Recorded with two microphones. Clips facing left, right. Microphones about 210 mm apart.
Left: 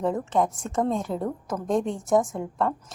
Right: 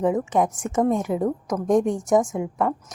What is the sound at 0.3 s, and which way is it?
A woman's voice, 15° right (ahead or behind).